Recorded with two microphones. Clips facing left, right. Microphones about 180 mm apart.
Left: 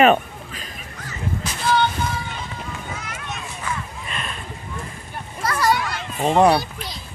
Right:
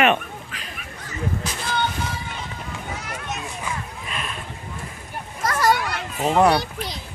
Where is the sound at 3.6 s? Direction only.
5° right (ahead or behind).